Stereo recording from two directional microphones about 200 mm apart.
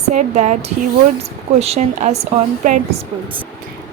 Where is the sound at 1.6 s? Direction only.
35° right (ahead or behind).